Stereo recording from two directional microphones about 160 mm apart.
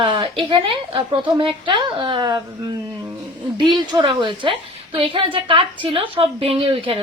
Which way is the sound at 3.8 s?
30° right (ahead or behind).